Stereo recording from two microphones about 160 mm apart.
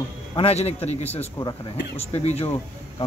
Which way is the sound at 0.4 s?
40° left (ahead or behind).